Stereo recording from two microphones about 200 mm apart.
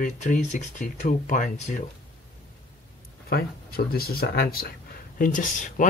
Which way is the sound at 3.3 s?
50° left (ahead or behind).